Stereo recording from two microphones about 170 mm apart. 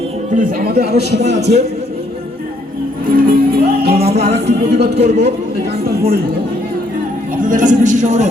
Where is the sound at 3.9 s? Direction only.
35° right (ahead or behind).